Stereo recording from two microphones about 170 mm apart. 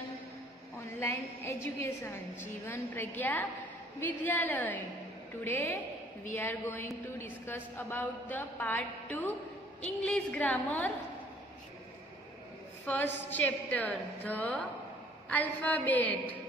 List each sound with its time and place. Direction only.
0.9 s a woman's voice: 15° left (ahead or behind)
12.8 s a woman's voice: 10° left (ahead or behind)